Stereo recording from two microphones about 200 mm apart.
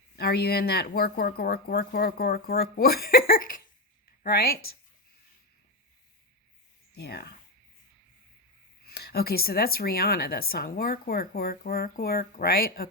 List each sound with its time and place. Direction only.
0.2 s speech: 50° left (ahead or behind)
6.9 s speech: 55° left (ahead or behind)
8.9 s speech: 50° left (ahead or behind)